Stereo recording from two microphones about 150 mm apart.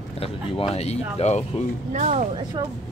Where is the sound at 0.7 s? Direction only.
45° left (ahead or behind).